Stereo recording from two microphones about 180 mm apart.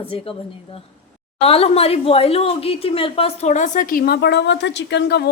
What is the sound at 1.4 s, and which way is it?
A woman's voice, 35° left (ahead or behind).